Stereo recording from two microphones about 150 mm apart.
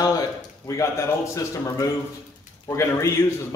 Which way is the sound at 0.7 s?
20° left (ahead or behind).